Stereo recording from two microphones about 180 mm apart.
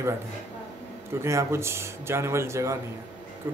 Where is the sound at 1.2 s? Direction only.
15° right (ahead or behind).